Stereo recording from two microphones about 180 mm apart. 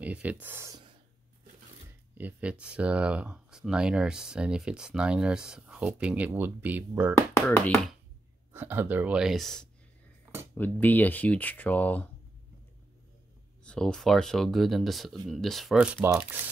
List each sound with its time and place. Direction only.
0.0 s speech: 10° right (ahead or behind)
2.1 s speech: 10° right (ahead or behind)
7.3 s speech: 5° left (ahead or behind)
8.5 s speech: 10° right (ahead or behind); by 12.1 s 10° left (ahead or behind)
13.7 s speech: 5° left (ahead or behind)